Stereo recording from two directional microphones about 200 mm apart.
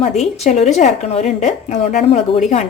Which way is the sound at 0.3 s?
35° left (ahead or behind).